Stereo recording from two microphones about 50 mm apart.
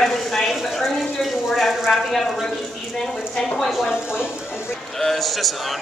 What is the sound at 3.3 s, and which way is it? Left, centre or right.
Speech, centre.